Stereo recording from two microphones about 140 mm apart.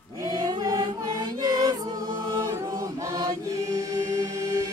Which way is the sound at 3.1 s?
25° right (ahead or behind).